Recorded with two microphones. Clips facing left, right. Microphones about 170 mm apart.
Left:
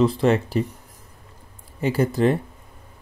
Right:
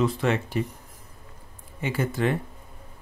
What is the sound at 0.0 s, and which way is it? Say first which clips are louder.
Speech: left 6 dB; 35° left (ahead or behind).